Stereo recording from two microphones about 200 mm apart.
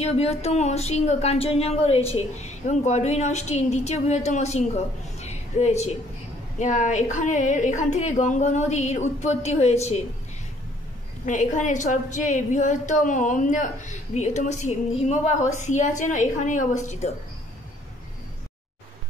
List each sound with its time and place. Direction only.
0.0 s a woman's voice: 30° left (ahead or behind)
11.2 s a woman's voice: 40° left (ahead or behind)